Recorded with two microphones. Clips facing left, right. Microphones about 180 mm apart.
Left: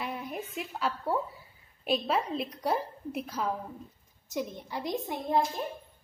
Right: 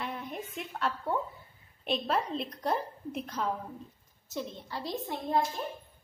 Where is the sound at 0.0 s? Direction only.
10° left (ahead or behind).